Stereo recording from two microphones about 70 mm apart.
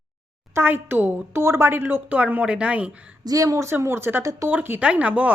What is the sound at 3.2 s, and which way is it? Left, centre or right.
Speech, right.